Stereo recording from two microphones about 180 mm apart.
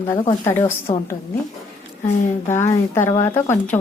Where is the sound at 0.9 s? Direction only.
25° left (ahead or behind).